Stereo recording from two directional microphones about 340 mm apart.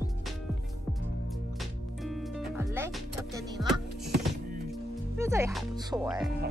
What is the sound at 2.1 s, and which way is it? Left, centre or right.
Music, centre.